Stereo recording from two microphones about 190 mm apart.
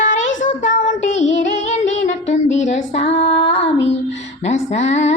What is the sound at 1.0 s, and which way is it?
Music, 35° left (ahead or behind).